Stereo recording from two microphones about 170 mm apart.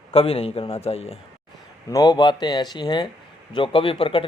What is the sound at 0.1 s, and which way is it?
A man's voice, 35° left (ahead or behind).